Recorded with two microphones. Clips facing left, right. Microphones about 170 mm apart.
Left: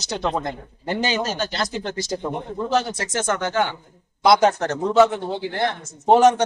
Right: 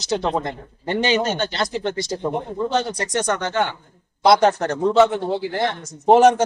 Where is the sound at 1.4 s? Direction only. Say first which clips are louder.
Right 2 dB; centre (ahead or behind).